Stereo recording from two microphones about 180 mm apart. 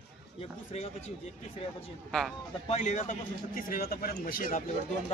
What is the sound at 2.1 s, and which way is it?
Speech, 5° left (ahead or behind).